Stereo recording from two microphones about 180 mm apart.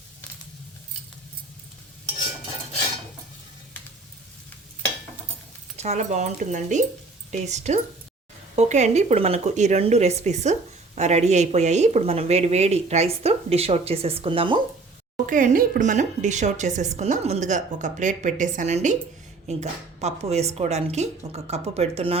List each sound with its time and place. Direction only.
5.7 s a woman's voice: 40° right (ahead or behind)
15.3 s a woman's voice: 45° right (ahead or behind)